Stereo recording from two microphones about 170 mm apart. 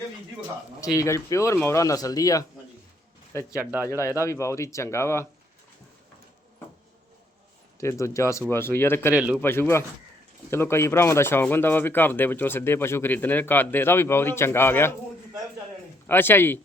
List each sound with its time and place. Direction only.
0.9 s speech: 15° left (ahead or behind)
3.5 s speech: 10° right (ahead or behind)
3.8 s speech: 15° left (ahead or behind)
7.8 s speech: 15° left (ahead or behind)
9.1 s speech: 10° right (ahead or behind)
9.4 s speech: 15° left (ahead or behind)
16.0 s speech: 10° left (ahead or behind)